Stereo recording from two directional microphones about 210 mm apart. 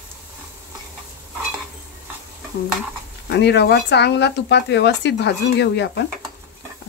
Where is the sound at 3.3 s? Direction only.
55° left (ahead or behind).